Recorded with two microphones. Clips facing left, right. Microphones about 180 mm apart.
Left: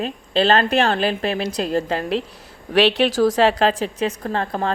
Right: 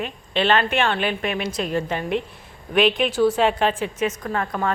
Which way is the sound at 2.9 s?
90° left.